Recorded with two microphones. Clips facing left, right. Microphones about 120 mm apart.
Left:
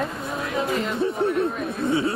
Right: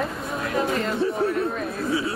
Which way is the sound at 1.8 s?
25° left (ahead or behind).